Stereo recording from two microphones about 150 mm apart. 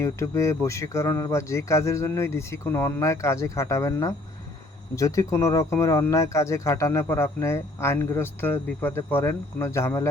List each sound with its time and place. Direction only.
0.0 s speech: 20° left (ahead or behind)